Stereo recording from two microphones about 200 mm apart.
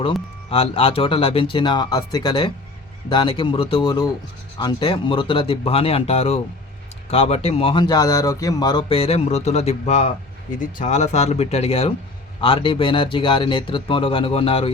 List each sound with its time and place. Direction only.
0.5 s speech: 25° left (ahead or behind)